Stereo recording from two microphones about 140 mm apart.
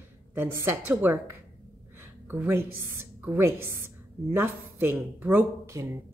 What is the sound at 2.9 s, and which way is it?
Speech, 15° right (ahead or behind).